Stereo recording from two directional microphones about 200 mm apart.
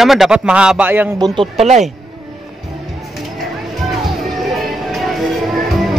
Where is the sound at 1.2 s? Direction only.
25° right (ahead or behind).